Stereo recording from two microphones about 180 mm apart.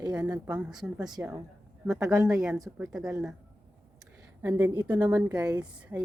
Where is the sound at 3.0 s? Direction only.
15° right (ahead or behind).